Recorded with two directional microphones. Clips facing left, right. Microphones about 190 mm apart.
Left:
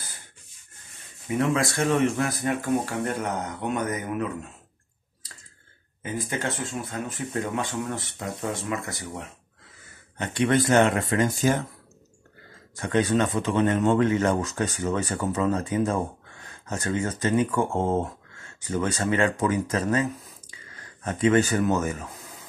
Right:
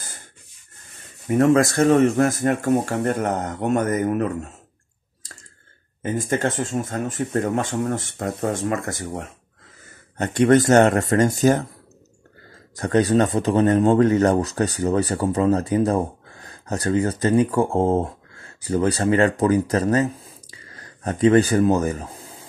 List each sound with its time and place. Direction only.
1.2 s speech: 45° right (ahead or behind)
6.0 s speech: 45° right (ahead or behind)
12.7 s speech: 40° right (ahead or behind)